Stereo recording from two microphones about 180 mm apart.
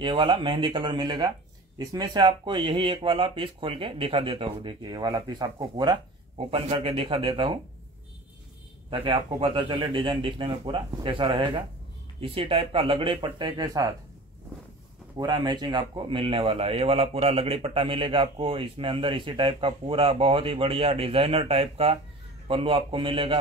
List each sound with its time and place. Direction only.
0.0 s speech: 30° right (ahead or behind)
8.9 s speech: 30° right (ahead or behind)
15.1 s speech: 25° right (ahead or behind)